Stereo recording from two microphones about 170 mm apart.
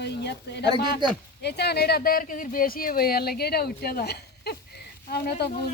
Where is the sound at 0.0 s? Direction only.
75° left (ahead or behind).